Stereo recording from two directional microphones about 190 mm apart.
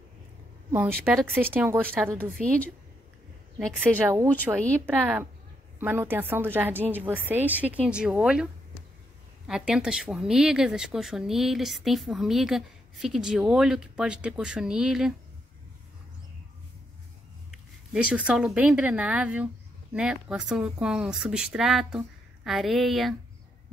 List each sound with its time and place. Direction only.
0.7 s a woman's voice: 10° right (ahead or behind)
1.9 s speech: 5° left (ahead or behind)
3.5 s a woman's voice: 5° right (ahead or behind)
9.5 s speech: 5° right (ahead or behind)
17.9 s speech: 5° right (ahead or behind)